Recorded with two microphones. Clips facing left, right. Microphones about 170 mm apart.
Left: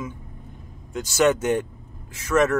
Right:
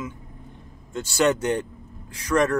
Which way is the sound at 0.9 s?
20° left (ahead or behind).